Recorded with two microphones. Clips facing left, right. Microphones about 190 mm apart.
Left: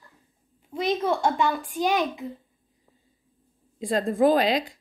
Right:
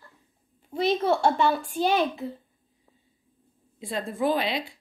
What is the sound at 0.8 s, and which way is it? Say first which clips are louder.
Speech: right 1 dB; 15° left (ahead or behind).